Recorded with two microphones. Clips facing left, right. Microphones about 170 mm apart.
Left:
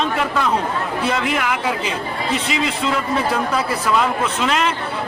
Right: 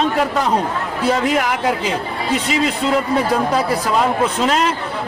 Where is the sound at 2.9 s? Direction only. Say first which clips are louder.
Right 4 dB; 35° right (ahead or behind).